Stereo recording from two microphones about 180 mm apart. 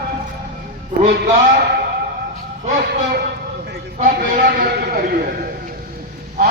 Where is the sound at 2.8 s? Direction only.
60° right (ahead or behind).